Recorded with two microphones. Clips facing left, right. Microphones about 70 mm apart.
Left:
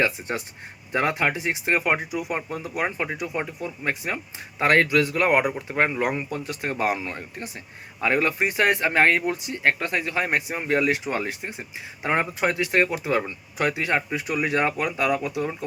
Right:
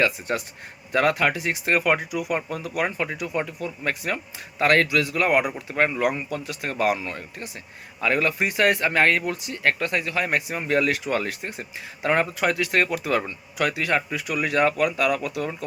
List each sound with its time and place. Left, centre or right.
0.0 s speech: left